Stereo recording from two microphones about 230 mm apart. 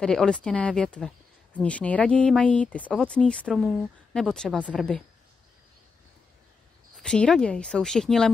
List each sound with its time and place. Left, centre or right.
0.0 s speech: centre
7.0 s speech: centre